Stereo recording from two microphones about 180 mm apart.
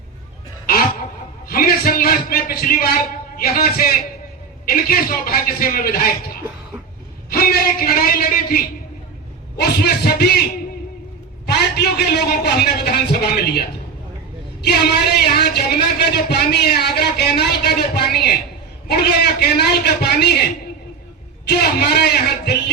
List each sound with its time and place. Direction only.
1.5 s a man's voice: 55° left (ahead or behind)
9.6 s speech: 65° left (ahead or behind)
11.5 s a man's voice: 65° left (ahead or behind)
14.6 s speech: 65° left (ahead or behind)